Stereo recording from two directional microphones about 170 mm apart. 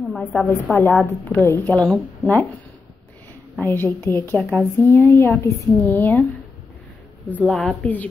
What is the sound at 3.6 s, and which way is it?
Speech, 10° left (ahead or behind).